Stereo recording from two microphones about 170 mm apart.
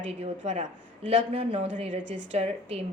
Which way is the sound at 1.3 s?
35° right (ahead or behind).